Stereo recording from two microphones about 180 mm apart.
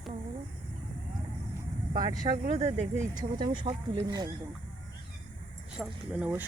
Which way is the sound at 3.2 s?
25° right (ahead or behind).